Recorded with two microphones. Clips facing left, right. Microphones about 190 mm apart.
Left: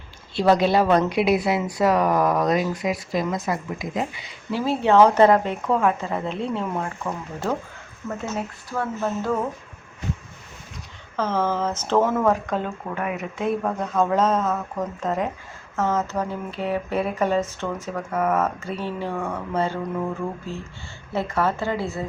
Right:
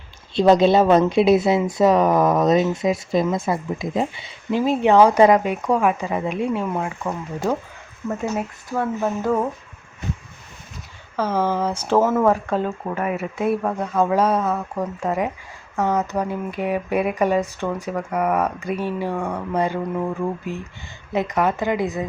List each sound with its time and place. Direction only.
0.3 s speech: 20° right (ahead or behind)
11.2 s speech: 10° right (ahead or behind)
12.5 s speech: 40° right (ahead or behind)
13.1 s speech: 5° right (ahead or behind)